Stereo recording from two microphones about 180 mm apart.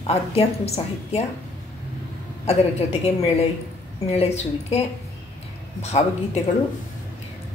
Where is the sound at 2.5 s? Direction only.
35° left (ahead or behind).